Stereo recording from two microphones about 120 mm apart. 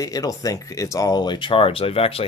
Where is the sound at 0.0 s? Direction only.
30° left (ahead or behind).